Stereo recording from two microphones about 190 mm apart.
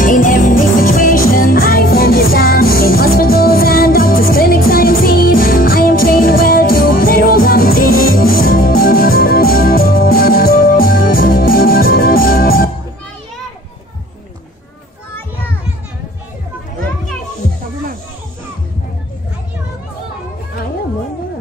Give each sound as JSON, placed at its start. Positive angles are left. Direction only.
{"t": 0.0, "sound": "music", "side_deg": 45}